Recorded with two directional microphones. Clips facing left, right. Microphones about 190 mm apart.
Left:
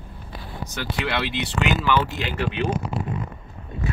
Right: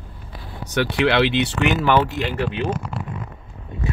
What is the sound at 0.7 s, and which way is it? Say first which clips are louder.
Speech: right 9 dB; 65° right (ahead or behind).